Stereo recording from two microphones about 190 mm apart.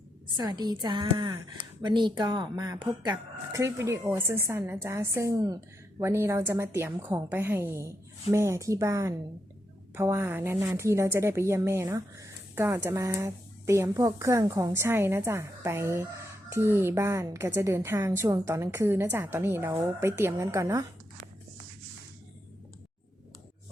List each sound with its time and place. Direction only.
0.3 s a woman's voice: 20° right (ahead or behind)